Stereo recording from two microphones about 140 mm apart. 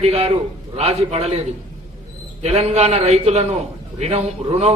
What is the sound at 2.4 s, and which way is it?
A man's voice, 50° right (ahead or behind).